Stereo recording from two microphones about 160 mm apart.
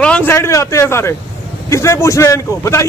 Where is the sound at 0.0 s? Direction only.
10° left (ahead or behind).